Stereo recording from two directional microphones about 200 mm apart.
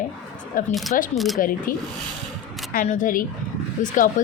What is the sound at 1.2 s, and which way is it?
Speech, centre (ahead or behind).